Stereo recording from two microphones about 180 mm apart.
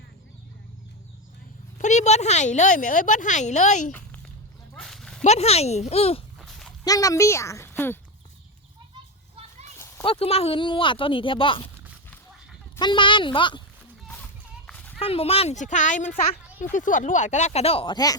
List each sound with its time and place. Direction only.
1.8 s a woman's voice: 40° left (ahead or behind)
4.7 s a sound: centre (ahead or behind)
5.2 s a woman's voice: 35° left (ahead or behind)
6.4 s a sound: 5° left (ahead or behind)
6.8 s speech: 20° left (ahead or behind)
10.0 s speech: 30° left (ahead or behind)
12.7 s speech: 25° left (ahead or behind)
14.7 s a sound: 10° left (ahead or behind)
14.9 s a woman's voice: 35° left (ahead or behind)